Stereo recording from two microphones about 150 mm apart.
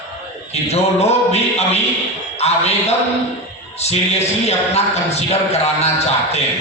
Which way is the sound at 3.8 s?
45° left (ahead or behind).